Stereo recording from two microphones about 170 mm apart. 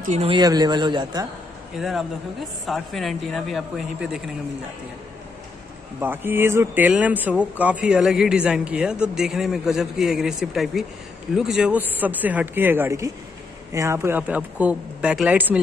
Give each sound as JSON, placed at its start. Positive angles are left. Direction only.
{"t": 0.0, "sound": "speech", "side_deg": -45}
{"t": 0.3, "sound": "speech", "side_deg": -25}
{"t": 1.8, "sound": "a man's voice", "side_deg": 0}
{"t": 5.9, "sound": "a man's voice", "side_deg": -15}